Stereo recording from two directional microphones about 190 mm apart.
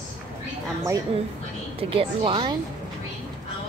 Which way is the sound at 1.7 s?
30° right (ahead or behind).